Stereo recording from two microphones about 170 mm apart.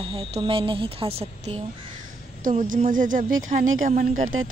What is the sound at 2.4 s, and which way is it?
A woman's voice, 50° right (ahead or behind).